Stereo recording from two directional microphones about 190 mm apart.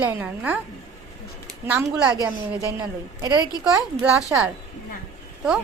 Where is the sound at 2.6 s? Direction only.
20° right (ahead or behind).